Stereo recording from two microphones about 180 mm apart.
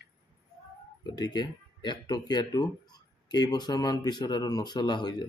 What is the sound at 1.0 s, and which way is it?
Speech, 25° left (ahead or behind).